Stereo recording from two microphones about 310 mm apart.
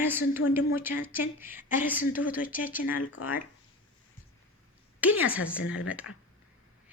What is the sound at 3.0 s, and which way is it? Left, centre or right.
Speech, left.